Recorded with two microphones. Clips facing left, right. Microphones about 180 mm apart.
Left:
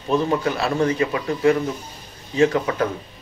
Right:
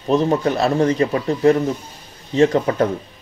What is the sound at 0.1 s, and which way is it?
Speech, 35° right (ahead or behind).